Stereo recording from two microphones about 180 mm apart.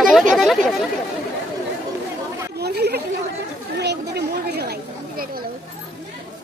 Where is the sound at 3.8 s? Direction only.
65° right (ahead or behind).